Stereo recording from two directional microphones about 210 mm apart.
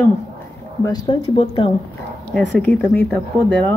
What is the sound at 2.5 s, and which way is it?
Speech, 10° left (ahead or behind).